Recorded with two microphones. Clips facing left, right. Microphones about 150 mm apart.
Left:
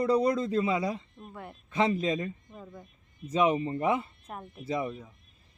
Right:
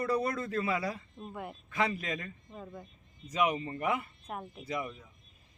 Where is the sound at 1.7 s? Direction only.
25° left (ahead or behind).